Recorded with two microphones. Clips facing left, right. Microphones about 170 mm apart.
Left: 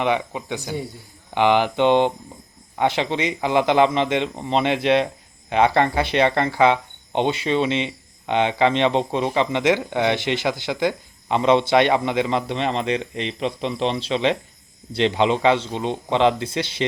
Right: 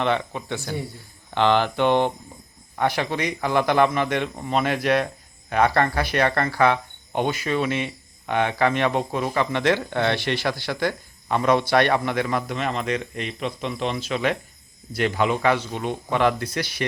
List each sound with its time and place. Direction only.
0.0 s speech: 15° left (ahead or behind)